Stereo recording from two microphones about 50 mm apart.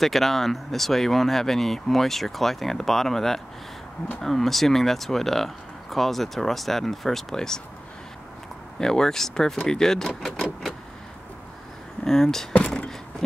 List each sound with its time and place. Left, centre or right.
0.0 s speech: centre
8.7 s speech: centre
12.0 s speech: centre
12.5 s a sound: left